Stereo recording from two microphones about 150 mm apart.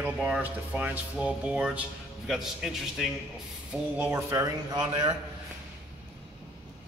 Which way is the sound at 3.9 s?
15° right (ahead or behind).